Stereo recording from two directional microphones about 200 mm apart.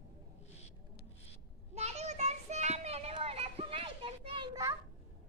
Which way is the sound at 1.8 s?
35° right (ahead or behind).